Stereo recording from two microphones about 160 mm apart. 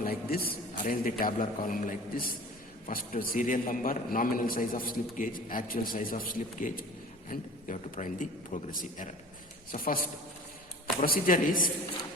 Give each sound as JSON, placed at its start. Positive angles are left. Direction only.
{"t": 0.0, "sound": "a man's voice", "side_deg": 65}
{"t": 11.0, "sound": "a man's voice", "side_deg": 60}